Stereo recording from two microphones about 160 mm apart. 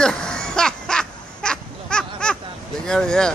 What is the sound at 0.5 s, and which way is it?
Crow, 5° left (ahead or behind).